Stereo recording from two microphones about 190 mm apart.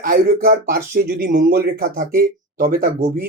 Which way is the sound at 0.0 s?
50° right (ahead or behind).